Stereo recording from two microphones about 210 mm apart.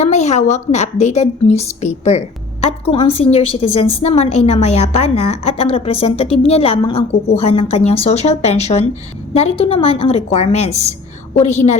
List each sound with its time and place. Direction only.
0.0 s a woman's voice: 30° left (ahead or behind)